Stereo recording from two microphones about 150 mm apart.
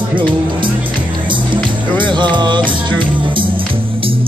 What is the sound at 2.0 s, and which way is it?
Music, 30° right (ahead or behind).